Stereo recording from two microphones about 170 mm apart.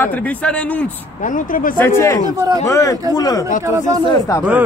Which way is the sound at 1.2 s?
50° left (ahead or behind).